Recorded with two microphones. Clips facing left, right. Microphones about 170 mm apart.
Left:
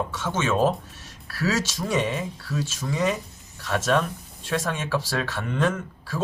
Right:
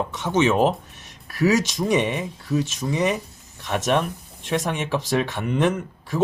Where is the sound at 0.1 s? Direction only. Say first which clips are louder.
Right 5 dB; 20° right (ahead or behind).